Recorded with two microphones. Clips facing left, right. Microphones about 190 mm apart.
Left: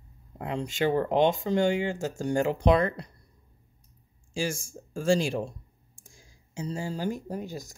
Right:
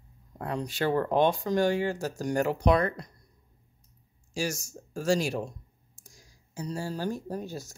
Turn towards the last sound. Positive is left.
turn(degrees=15)  # may be behind; listen again after turning